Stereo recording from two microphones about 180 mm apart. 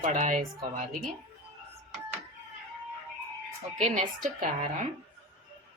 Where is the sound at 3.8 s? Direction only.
40° right (ahead or behind).